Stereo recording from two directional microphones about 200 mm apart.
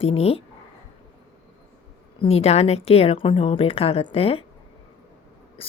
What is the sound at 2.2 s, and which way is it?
Speech, 30° left (ahead or behind).